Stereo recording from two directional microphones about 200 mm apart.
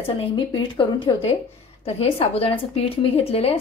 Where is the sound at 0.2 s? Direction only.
25° left (ahead or behind).